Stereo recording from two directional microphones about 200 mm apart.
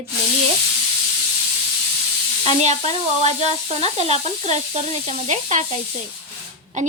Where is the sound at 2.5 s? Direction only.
35° right (ahead or behind).